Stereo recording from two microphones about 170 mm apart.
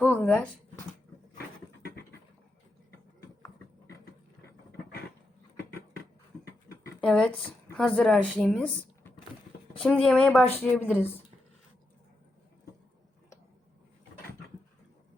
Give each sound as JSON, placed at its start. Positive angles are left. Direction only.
{"t": 0.0, "sound": "a sound", "side_deg": 10}
{"t": 6.4, "sound": "dog", "side_deg": 15}
{"t": 7.0, "sound": "speech", "side_deg": 5}